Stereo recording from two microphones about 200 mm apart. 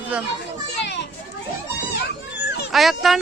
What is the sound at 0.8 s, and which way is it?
Children playing, 60° left (ahead or behind).